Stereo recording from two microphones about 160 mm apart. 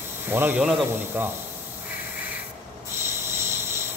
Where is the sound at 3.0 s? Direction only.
15° right (ahead or behind).